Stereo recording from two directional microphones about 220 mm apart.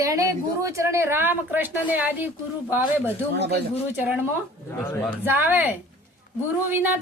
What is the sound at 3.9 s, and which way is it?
Speech, 10° right (ahead or behind).